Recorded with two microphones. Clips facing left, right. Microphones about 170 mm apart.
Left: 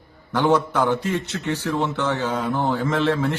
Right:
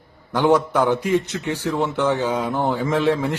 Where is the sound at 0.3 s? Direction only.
15° right (ahead or behind).